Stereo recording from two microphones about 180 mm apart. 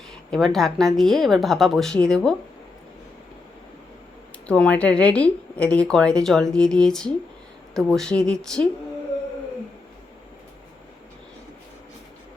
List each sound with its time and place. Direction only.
0.3 s a woman's voice: centre (ahead or behind)
4.4 s a woman's voice: 5° left (ahead or behind)